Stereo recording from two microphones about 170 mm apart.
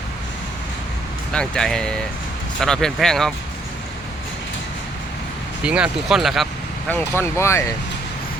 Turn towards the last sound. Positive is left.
turn(degrees=15)  # may be behind; listen again after turning